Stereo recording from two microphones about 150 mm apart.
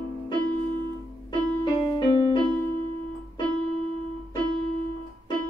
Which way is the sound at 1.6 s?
30° left (ahead or behind).